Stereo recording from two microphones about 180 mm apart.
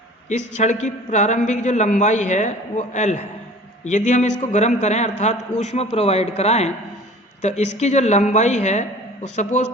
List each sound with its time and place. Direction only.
0.3 s a man's voice: 40° left (ahead or behind)